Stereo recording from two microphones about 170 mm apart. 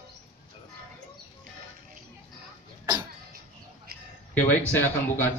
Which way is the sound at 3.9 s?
65° right (ahead or behind).